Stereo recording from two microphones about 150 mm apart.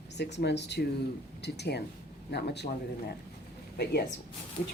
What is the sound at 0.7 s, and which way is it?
Speech, 90° left.